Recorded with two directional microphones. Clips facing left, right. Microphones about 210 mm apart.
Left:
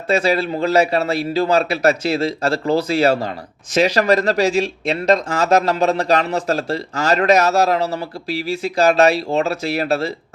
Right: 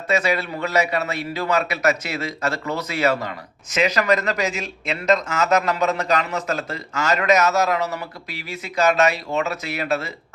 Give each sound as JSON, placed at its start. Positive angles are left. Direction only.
{"t": 0.1, "sound": "a man's voice", "side_deg": 30}